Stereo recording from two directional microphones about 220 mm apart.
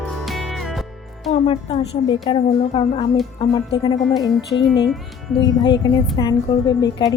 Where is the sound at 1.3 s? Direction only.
25° left (ahead or behind).